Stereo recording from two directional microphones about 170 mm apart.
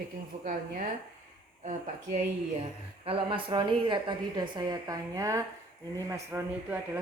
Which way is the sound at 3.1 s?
30° right (ahead or behind).